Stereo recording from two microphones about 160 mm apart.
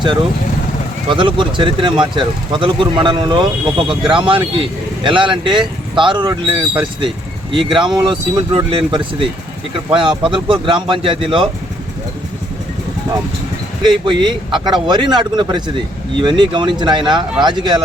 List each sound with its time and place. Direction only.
1.1 s speech: 30° right (ahead or behind)
13.8 s speech: 30° right (ahead or behind)